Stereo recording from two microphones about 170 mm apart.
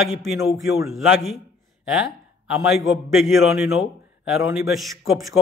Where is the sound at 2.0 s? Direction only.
5° right (ahead or behind).